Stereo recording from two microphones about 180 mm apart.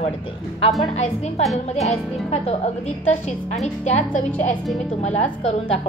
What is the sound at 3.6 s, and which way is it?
A woman's voice, 40° left (ahead or behind).